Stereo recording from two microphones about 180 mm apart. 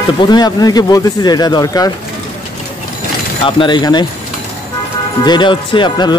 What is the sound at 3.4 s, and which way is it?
Speech, 25° left (ahead or behind).